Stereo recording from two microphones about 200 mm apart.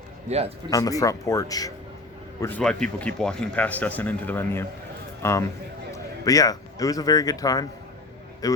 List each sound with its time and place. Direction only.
0.3 s speech: 30° right (ahead or behind)
0.7 s a man's voice: 15° left (ahead or behind)